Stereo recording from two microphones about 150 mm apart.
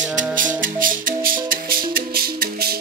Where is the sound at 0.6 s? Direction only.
65° right (ahead or behind); by 2.7 s 85° right.